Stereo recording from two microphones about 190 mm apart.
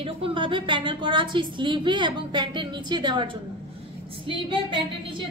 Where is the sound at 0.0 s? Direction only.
30° right (ahead or behind).